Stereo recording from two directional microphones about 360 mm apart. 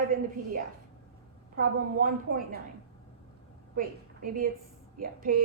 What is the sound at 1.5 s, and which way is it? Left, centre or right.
A woman's voice, right.